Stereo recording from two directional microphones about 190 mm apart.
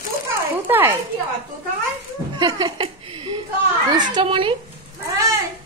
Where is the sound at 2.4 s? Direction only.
20° right (ahead or behind).